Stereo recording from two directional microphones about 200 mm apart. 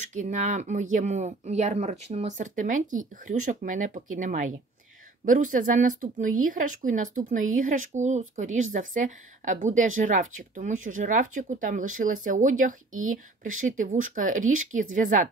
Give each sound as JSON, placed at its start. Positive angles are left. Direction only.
{"t": 0.0, "sound": "speech", "side_deg": -40}